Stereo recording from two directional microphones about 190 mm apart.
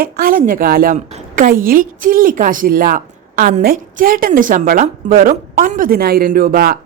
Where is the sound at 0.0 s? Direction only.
50° right (ahead or behind).